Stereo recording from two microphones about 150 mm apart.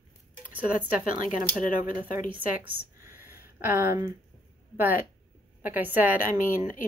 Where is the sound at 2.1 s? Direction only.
60° left (ahead or behind).